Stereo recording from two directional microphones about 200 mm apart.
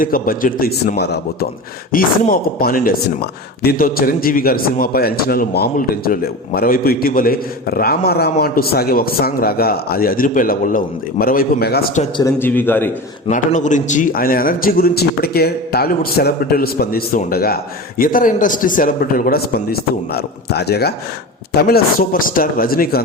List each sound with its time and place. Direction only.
0.0 s speech: 45° left (ahead or behind)
12.1 s a man's voice: 15° left (ahead or behind)
13.2 s speech: 40° left (ahead or behind)